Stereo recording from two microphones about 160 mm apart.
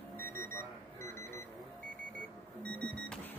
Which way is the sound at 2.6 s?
10° left (ahead or behind).